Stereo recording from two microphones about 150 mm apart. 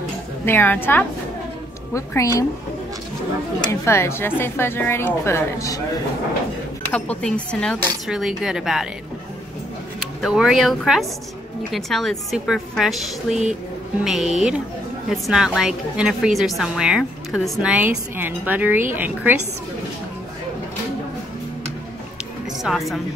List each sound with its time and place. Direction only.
0.5 s a woman's voice: 15° left (ahead or behind)
3.6 s a woman's voice: 20° left (ahead or behind)
6.9 s speech: 10° left (ahead or behind)
10.2 s a woman's voice: 5° right (ahead or behind)
22.6 s speech: centre (ahead or behind)